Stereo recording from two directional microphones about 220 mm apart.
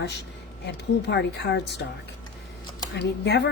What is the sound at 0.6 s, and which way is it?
A woman's voice, 50° left (ahead or behind).